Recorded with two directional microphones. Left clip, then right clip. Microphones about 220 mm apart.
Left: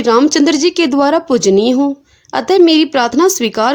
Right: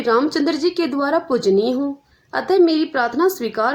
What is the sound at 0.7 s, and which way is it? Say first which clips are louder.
Speech: left 7 dB; 35° left (ahead or behind).